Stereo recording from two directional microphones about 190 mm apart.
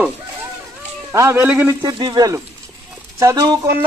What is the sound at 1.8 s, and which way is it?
A man's voice, 25° right (ahead or behind).